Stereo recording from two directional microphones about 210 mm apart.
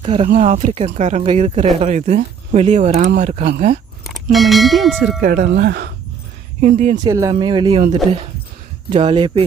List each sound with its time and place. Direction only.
0.0 s speech: 25° right (ahead or behind)
4.0 s speech: centre (ahead or behind)
5.2 s speech: 45° right (ahead or behind)
6.6 s speech: 35° right (ahead or behind)
7.0 s speech: 15° right (ahead or behind)